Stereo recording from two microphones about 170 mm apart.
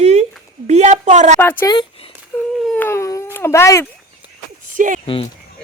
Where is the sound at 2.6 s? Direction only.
10° left (ahead or behind).